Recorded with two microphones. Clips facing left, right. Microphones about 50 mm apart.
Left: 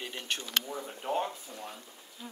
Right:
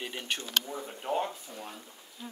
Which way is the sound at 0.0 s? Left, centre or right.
Centre.